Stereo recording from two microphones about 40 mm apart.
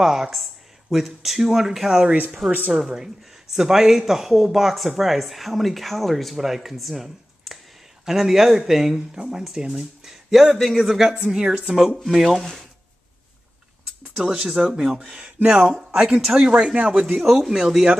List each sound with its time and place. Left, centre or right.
0.0 s speech: centre
10.3 s speech: centre
11.4 s speech: right
11.7 s speech: centre
12.2 s speech: centre
14.1 s speech: right
15.0 s speech: right
15.7 s speech: centre